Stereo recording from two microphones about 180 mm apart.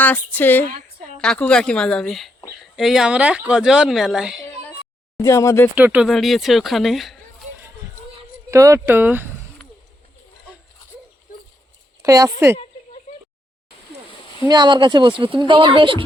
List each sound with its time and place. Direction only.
0.0 s speech: 10° left (ahead or behind)
5.1 s speech: 20° left (ahead or behind)
5.7 s speech: 10° right (ahead or behind)
8.4 s speech: 15° right (ahead or behind)
12.0 s speech: 20° right (ahead or behind)
14.4 s speech: 20° right (ahead or behind)